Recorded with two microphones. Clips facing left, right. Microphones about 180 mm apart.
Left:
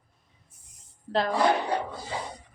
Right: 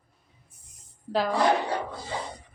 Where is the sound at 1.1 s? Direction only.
5° right (ahead or behind).